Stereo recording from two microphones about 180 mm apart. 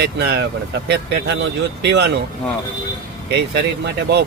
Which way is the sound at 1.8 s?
70° right (ahead or behind).